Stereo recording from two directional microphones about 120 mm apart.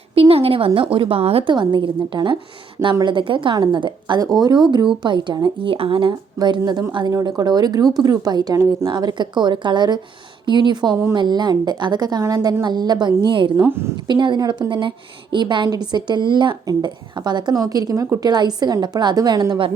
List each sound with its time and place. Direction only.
0.1 s a woman's voice: 55° right (ahead or behind)
13.6 s a woman's voice: 20° right (ahead or behind)
14.1 s a woman's voice: 40° right (ahead or behind)